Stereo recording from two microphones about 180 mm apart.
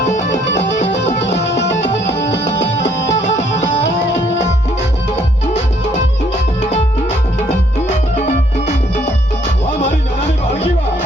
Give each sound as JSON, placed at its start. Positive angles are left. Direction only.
{"t": 0.5, "sound": "music", "side_deg": 85}
{"t": 7.4, "sound": "music", "side_deg": 40}
{"t": 9.6, "sound": "music", "side_deg": 75}